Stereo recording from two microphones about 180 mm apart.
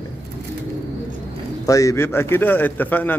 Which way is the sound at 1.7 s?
15° left (ahead or behind).